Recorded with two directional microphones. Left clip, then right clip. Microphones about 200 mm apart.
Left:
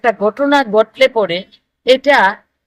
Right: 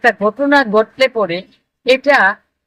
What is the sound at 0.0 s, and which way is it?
A man's voice, 20° left (ahead or behind).